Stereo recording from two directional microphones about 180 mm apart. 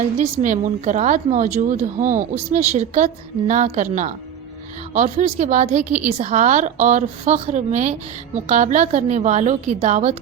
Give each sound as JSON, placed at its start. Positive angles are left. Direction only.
{"t": 0.2, "sound": "a woman's voice", "side_deg": -45}
{"t": 4.9, "sound": "a woman's voice", "side_deg": -40}